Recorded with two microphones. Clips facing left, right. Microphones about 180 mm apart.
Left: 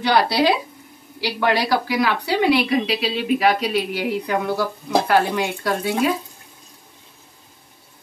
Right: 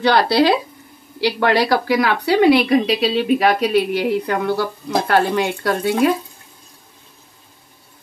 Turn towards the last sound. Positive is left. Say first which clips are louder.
# right 4 dB
turn(degrees=-55)  # may be behind; listen again after turning